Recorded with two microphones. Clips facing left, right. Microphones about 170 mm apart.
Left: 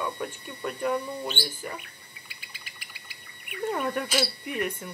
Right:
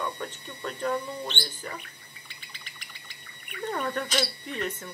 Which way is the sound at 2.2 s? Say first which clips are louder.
Right 1 dB; 5° left (ahead or behind).